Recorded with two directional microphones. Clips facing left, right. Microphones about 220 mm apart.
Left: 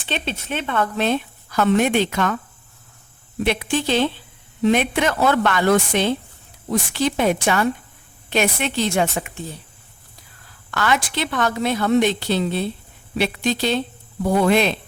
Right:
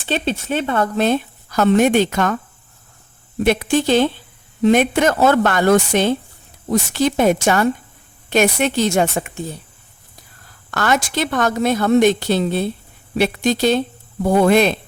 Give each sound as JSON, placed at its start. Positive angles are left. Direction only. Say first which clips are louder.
{"t": 0.1, "sound": "a woman's voice", "louder": "right 6 dB", "side_deg": -40}
{"t": 3.4, "sound": "a woman's voice", "louder": "right 5 dB", "side_deg": -45}
{"t": 10.7, "sound": "a woman's voice", "louder": "right 3 dB", "side_deg": -45}